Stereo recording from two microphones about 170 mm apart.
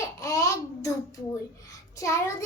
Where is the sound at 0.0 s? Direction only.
20° left (ahead or behind).